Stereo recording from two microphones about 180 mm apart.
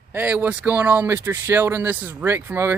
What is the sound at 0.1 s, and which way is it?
Speech, 10° right (ahead or behind).